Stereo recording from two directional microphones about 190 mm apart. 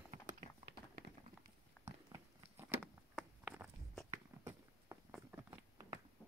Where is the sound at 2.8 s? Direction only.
Centre (ahead or behind).